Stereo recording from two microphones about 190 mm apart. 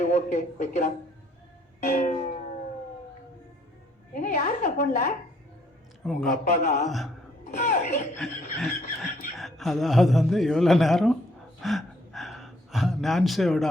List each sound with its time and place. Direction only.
0.0 s speech: 40° left (ahead or behind)
1.9 s a sound: 40° left (ahead or behind)
4.1 s a woman's voice: 40° left (ahead or behind)
6.1 s speech: centre (ahead or behind)
6.4 s speech: 40° left (ahead or behind)
6.8 s speech: centre (ahead or behind)
7.6 s speech: 35° left (ahead or behind)
8.2 s speech: centre (ahead or behind)
11.6 s a sound: centre (ahead or behind)